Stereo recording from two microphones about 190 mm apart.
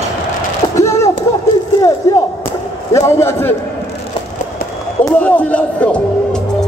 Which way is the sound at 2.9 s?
15° left (ahead or behind).